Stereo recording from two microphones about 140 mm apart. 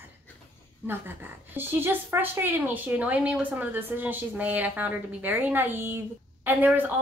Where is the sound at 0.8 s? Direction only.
15° right (ahead or behind).